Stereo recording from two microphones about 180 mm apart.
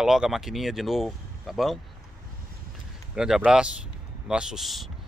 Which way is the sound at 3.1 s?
5° right (ahead or behind).